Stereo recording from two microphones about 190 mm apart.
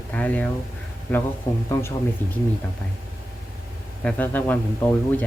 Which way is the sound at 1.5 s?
15° left (ahead or behind).